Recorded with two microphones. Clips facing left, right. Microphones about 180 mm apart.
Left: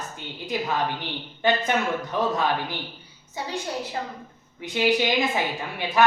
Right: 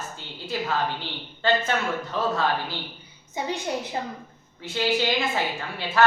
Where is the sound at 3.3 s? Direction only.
20° right (ahead or behind).